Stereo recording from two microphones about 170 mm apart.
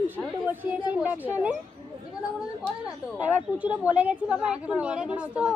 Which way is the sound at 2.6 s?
5° left (ahead or behind).